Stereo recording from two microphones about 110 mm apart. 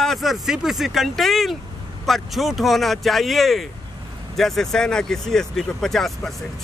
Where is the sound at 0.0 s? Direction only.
Centre (ahead or behind).